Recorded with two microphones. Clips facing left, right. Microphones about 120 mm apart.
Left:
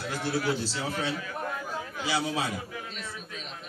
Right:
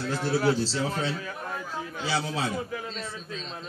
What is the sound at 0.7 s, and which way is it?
Speech, 15° left (ahead or behind).